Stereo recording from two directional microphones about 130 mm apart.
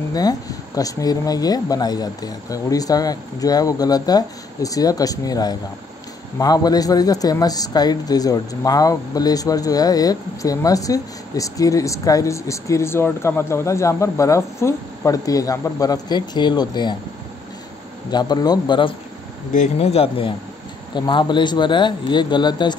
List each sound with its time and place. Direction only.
0.1 s speech: 30° left (ahead or behind)
18.1 s speech: 30° left (ahead or behind)
19.8 s speech: 50° left (ahead or behind)